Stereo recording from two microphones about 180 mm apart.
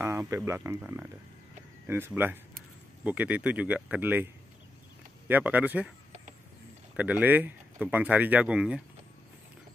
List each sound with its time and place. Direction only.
0.0 s a sound: 15° right (ahead or behind)
0.5 s speech: 15° right (ahead or behind)
5.3 s speech: 10° right (ahead or behind)
7.0 s speech: 10° right (ahead or behind)